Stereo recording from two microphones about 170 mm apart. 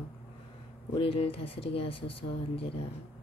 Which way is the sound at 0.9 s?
35° left (ahead or behind).